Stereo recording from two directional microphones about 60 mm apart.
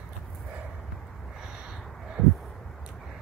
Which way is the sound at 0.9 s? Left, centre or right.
Centre.